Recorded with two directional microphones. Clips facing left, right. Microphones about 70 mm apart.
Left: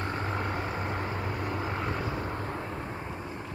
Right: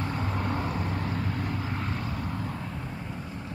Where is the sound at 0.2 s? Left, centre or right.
Centre.